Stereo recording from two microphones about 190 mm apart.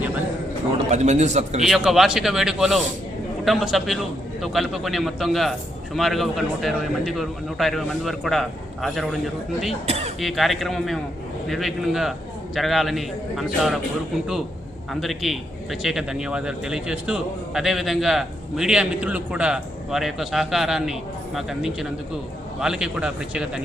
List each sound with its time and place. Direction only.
0.9 s a man's voice: 35° right (ahead or behind)
1.6 s a man's voice: centre (ahead or behind)
9.8 s speech: 35° right (ahead or behind)
10.2 s a man's voice: centre (ahead or behind)
15.0 s a man's voice: centre (ahead or behind)